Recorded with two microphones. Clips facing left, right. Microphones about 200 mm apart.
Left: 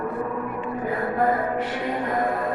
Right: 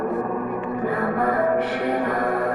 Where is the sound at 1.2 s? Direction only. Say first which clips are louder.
Right 2 dB; 60° right (ahead or behind).